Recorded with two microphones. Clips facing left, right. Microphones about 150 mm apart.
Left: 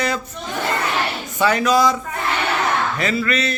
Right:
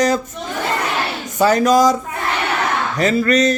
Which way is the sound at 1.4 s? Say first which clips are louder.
Right 4 dB; 40° right (ahead or behind).